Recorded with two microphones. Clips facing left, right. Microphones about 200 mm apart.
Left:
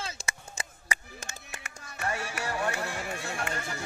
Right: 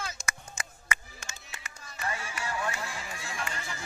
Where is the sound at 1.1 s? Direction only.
45° left (ahead or behind).